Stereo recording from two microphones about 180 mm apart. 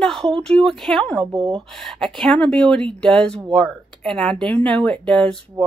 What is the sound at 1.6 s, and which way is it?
Speech, centre (ahead or behind).